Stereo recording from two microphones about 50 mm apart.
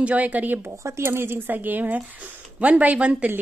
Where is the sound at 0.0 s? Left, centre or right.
Right.